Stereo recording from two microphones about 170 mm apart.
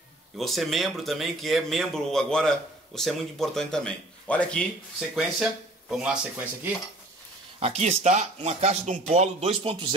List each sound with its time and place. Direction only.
0.4 s speech: centre (ahead or behind)
7.6 s speech: 40° right (ahead or behind)